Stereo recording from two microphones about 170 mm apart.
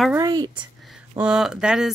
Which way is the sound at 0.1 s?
20° right (ahead or behind).